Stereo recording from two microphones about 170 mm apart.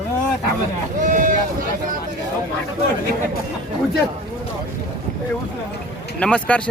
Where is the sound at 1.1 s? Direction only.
50° right (ahead or behind).